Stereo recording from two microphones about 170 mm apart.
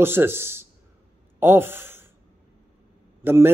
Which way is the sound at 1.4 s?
15° right (ahead or behind).